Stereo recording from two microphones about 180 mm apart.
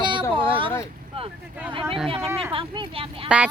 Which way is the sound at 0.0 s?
25° right (ahead or behind).